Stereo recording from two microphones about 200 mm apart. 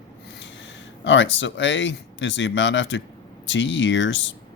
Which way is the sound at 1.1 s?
65° left (ahead or behind).